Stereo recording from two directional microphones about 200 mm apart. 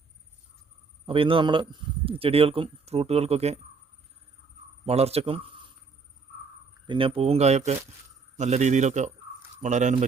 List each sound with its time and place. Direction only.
1.0 s speech: 25° right (ahead or behind)
4.9 s speech: 30° right (ahead or behind)
6.8 s speech: 25° right (ahead or behind)